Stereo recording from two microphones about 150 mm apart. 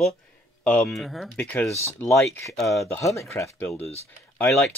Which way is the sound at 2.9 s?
20° left (ahead or behind).